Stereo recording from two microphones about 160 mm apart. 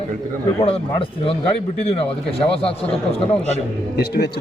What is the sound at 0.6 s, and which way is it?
Speech, 35° left (ahead or behind).